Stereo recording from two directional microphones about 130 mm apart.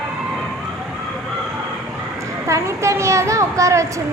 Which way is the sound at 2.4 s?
25° right (ahead or behind).